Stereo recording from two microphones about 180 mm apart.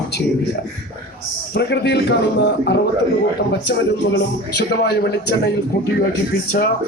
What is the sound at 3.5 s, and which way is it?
A man's voice, 80° left.